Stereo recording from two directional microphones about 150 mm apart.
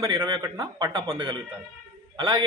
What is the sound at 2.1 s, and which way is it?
Speech, 30° right (ahead or behind).